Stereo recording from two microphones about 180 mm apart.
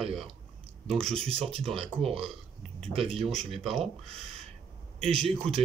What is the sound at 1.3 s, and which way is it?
Speech, 30° right (ahead or behind).